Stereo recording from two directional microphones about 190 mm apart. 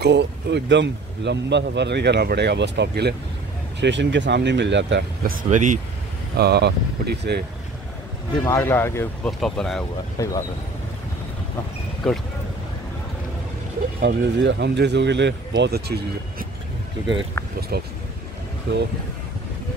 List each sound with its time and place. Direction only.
0.0 s speech: 65° right (ahead or behind); by 5.8 s 40° right (ahead or behind)
6.3 s speech: 60° right (ahead or behind)
8.5 s speech: 15° left (ahead or behind)
10.1 s speech: 20° left (ahead or behind)
12.0 s speech: centre (ahead or behind)
14.0 s speech: 65° right (ahead or behind)
17.6 s speech: 55° right (ahead or behind)
18.7 s speech: 70° right (ahead or behind)